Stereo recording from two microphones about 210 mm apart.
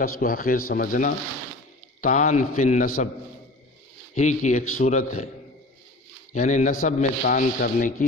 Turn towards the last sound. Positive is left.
turn(degrees=40)  # may be behind; listen again after turning